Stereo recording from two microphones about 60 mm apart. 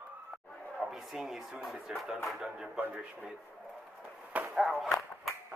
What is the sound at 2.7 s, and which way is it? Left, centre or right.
Speech, right.